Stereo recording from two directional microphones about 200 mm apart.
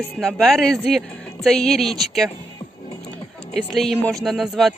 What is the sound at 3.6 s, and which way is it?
Speech, centre (ahead or behind).